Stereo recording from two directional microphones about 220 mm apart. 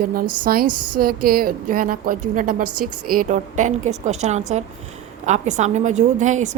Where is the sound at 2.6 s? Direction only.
90° right.